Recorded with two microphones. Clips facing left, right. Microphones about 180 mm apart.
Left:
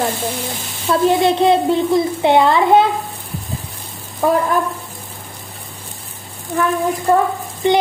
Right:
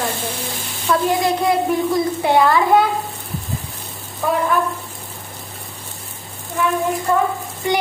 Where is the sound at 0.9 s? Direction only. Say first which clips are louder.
Left 4 dB; 30° left (ahead or behind).